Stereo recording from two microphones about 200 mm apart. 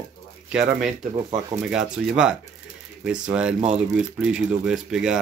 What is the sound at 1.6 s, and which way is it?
Speech, 5° right (ahead or behind).